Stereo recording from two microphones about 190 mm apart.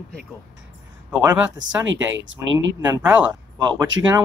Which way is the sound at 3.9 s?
85° right.